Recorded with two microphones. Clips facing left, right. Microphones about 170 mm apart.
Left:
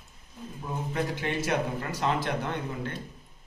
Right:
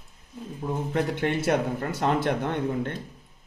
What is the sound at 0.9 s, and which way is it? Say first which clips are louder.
A man's voice: right 4 dB; 55° right (ahead or behind).